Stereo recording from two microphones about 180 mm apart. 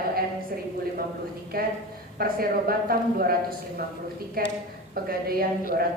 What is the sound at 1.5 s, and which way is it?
Speech, 55° right (ahead or behind).